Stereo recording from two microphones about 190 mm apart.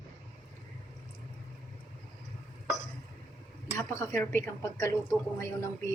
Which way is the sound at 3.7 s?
10° left (ahead or behind).